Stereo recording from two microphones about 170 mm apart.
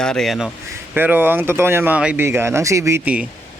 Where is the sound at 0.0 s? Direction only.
5° left (ahead or behind).